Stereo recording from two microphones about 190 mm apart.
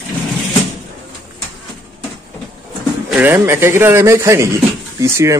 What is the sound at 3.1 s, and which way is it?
Speech, 10° right (ahead or behind).